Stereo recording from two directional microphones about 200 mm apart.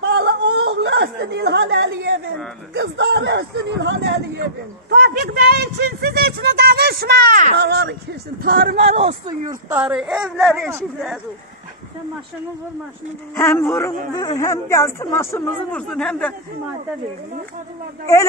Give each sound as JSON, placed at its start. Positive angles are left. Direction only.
{"t": 0.0, "sound": "a sound", "side_deg": -60}
{"t": 2.7, "sound": "speech", "side_deg": -60}
{"t": 8.9, "sound": "speech", "side_deg": -30}
{"t": 9.5, "sound": "speech", "side_deg": -10}
{"t": 13.4, "sound": "a man's voice", "side_deg": 10}